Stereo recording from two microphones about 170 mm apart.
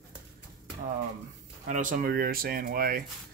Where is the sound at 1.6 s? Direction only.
50° right (ahead or behind).